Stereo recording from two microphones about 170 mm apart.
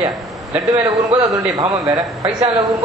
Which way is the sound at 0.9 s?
20° right (ahead or behind).